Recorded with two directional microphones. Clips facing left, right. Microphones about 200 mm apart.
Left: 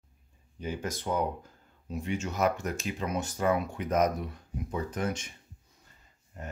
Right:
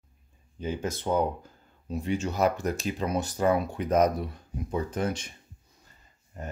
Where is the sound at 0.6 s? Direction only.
25° right (ahead or behind).